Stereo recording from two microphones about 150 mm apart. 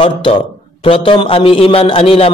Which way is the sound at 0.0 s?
40° left (ahead or behind).